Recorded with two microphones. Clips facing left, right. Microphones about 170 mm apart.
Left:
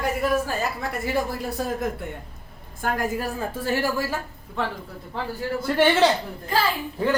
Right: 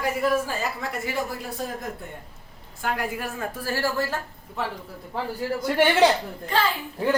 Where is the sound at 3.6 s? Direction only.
20° left (ahead or behind).